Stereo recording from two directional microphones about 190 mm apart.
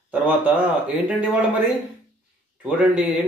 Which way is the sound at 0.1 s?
10° right (ahead or behind).